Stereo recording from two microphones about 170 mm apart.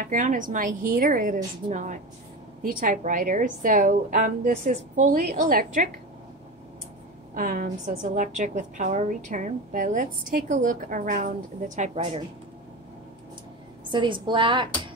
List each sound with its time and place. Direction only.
0.0 s a woman's voice: 50° right (ahead or behind)
7.3 s a woman's voice: 50° right (ahead or behind)
13.8 s a woman's voice: 30° right (ahead or behind)